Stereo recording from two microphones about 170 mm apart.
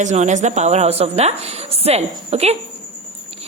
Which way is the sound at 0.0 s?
45° right (ahead or behind).